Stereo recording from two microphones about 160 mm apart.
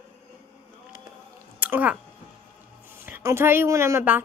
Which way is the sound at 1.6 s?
10° right (ahead or behind).